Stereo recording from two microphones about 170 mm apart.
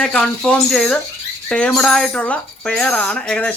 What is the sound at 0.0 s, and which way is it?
Speech, 5° left (ahead or behind).